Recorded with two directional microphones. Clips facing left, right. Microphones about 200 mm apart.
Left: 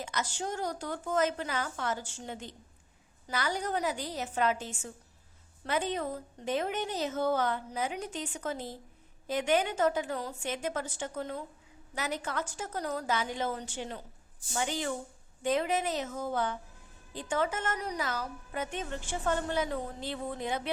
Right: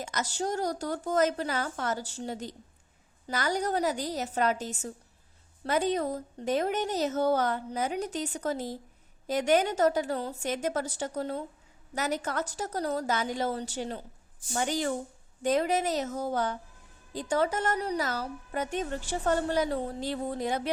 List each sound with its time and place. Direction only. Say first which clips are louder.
0.0 s a woman's voice: right 3 dB; 40° right (ahead or behind)